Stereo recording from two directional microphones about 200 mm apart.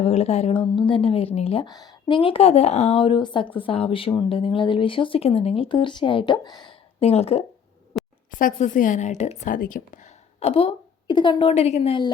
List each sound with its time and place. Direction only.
0.0 s a woman's voice: 30° left (ahead or behind)
7.9 s a sound: centre (ahead or behind)
8.3 s a woman's voice: 40° left (ahead or behind); by 12.1 s 25° left (ahead or behind)